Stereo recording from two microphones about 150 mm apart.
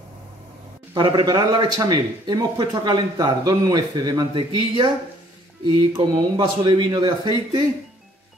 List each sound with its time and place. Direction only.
0.9 s a man's voice: 30° right (ahead or behind)